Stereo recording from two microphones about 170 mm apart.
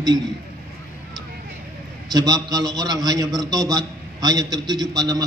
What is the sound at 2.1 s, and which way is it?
A man's voice, 25° right (ahead or behind).